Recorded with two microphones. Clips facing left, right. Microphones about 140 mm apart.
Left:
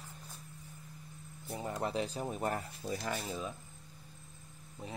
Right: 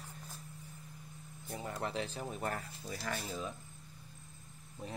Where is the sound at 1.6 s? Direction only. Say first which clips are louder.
Left 3 dB; 25° left (ahead or behind).